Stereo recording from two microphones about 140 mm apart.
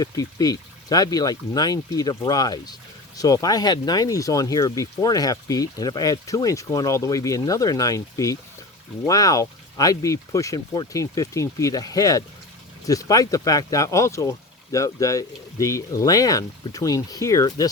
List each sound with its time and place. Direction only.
0.0 s speech: 25° left (ahead or behind)